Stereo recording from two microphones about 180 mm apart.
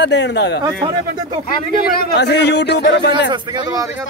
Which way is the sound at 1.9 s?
65° left (ahead or behind).